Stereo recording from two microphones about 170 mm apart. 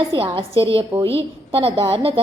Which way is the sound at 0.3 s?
30° right (ahead or behind).